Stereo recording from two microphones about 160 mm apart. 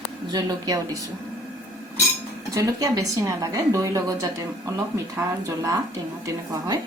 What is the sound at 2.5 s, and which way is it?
A woman's voice, 20° right (ahead or behind).